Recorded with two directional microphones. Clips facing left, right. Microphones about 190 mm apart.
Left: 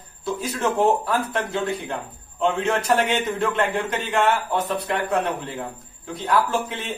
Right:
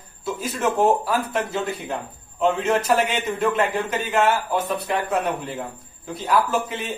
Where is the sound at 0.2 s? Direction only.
5° right (ahead or behind).